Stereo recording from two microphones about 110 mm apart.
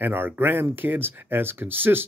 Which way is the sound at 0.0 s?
20° right (ahead or behind).